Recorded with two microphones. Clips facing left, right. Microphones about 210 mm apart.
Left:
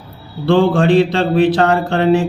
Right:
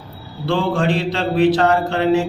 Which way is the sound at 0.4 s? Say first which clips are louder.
Left 6 dB; 55° left (ahead or behind).